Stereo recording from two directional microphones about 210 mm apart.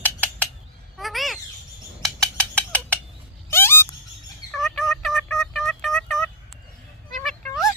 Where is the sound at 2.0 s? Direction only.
5° left (ahead or behind).